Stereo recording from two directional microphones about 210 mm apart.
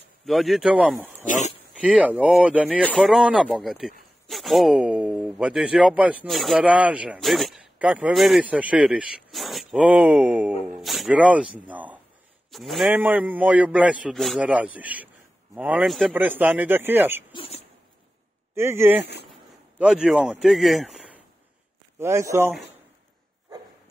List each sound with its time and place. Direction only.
0.2 s speech: centre (ahead or behind)
1.2 s speech: 35° left (ahead or behind)
1.7 s a man's voice: 5° right (ahead or behind)
17.3 s speech: 25° left (ahead or behind)
18.5 s a man's voice: 15° right (ahead or behind)
21.9 s a man's voice: 10° right (ahead or behind)